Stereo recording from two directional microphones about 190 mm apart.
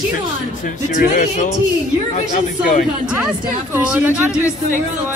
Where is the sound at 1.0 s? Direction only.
45° left (ahead or behind).